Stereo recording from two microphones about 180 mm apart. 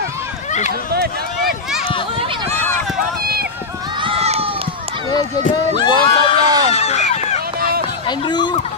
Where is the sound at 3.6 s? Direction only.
20° right (ahead or behind).